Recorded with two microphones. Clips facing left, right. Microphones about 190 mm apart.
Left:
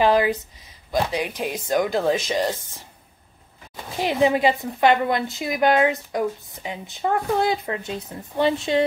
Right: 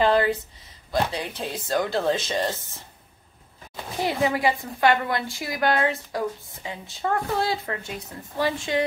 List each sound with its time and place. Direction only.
0.0 s speech: 15° left (ahead or behind)
4.0 s a woman's voice: 20° left (ahead or behind)